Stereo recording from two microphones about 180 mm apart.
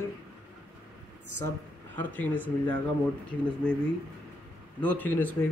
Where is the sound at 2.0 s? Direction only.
10° left (ahead or behind).